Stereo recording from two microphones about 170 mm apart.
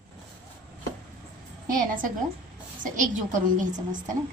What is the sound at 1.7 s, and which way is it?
A woman's voice, 55° right (ahead or behind).